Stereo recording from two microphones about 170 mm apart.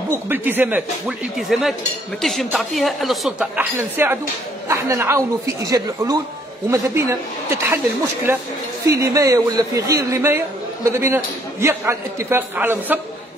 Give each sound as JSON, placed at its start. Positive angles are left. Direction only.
{"t": 0.3, "sound": "speech", "side_deg": -10}
{"t": 6.7, "sound": "a man's voice", "side_deg": -15}